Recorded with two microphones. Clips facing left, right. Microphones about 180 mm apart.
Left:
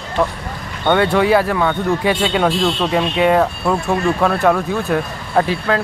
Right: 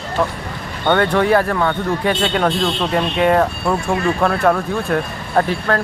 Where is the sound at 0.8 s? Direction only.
10° left (ahead or behind).